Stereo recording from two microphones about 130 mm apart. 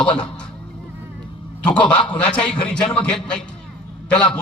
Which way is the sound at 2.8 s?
35° left (ahead or behind).